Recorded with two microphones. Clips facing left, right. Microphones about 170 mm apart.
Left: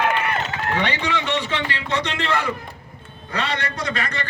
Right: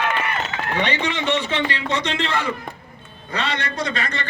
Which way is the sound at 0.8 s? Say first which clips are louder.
Right 3 dB; 20° right (ahead or behind).